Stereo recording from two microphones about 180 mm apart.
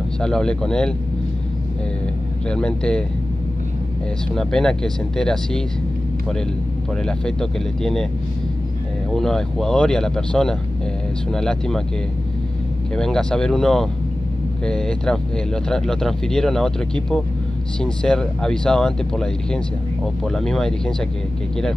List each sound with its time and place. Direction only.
0.2 s speech: 5° left (ahead or behind)
2.4 s speech: 5° left (ahead or behind)
4.4 s speech: 5° left (ahead or behind)
7.1 s speech: 5° left (ahead or behind)
9.1 s speech: 5° left (ahead or behind)
12.9 s speech: 5° left (ahead or behind)